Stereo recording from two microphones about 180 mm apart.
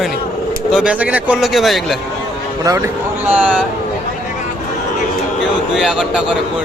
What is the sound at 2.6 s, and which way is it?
Speech, 15° right (ahead or behind).